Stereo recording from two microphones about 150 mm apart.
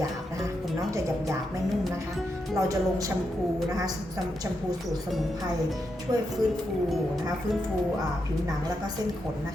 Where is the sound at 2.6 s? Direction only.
20° right (ahead or behind).